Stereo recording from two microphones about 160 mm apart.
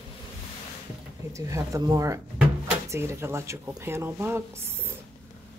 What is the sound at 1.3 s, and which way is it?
Speech, 20° right (ahead or behind).